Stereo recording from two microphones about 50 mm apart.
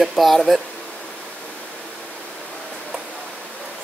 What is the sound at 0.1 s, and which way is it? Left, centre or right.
Speech, centre.